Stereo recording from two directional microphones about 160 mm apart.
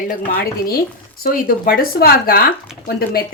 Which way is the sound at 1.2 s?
65° left (ahead or behind).